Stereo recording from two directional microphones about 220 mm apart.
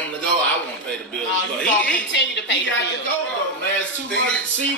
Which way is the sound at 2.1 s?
55° left (ahead or behind).